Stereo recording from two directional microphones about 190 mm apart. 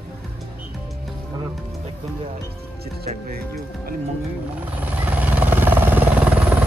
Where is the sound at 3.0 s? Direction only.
45° right (ahead or behind).